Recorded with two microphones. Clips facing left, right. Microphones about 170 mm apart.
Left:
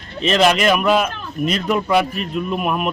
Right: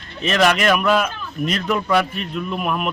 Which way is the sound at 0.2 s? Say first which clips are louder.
Left 2 dB; 30° left (ahead or behind).